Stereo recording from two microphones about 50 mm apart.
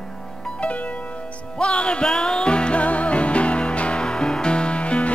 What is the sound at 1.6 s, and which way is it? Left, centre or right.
Music, left.